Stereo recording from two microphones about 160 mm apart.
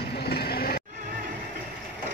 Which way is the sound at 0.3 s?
75° left (ahead or behind).